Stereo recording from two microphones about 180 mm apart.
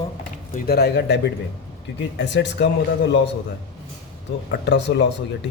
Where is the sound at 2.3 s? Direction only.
75° left (ahead or behind).